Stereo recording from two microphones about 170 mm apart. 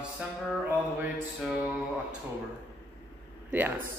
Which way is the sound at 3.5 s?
10° right (ahead or behind).